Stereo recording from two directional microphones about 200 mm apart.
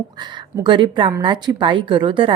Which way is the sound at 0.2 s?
20° right (ahead or behind).